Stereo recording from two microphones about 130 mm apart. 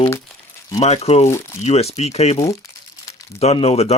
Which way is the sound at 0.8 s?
55° left (ahead or behind).